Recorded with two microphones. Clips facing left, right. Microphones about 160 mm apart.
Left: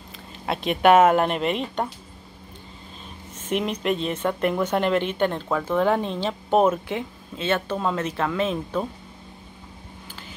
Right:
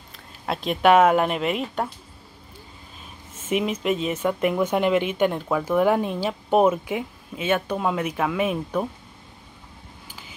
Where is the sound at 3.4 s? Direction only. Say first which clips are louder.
Right 1 dB; 5° right (ahead or behind).